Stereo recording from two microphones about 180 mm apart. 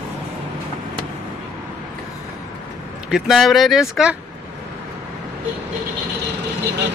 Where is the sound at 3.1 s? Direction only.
Centre (ahead or behind).